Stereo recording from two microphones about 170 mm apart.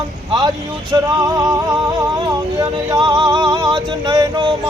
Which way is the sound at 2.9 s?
25° right (ahead or behind).